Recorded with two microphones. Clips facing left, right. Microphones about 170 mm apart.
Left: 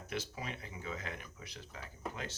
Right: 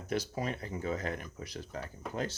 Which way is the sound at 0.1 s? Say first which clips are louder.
Right 8 dB; 40° right (ahead or behind).